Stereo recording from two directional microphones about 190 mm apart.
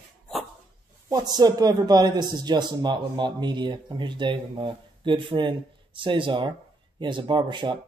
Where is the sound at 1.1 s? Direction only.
20° right (ahead or behind).